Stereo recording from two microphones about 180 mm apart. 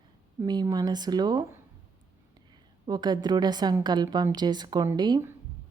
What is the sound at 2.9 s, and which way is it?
A woman's voice, 25° right (ahead or behind).